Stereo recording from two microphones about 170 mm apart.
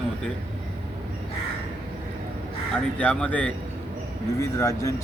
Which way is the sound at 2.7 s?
5° left (ahead or behind).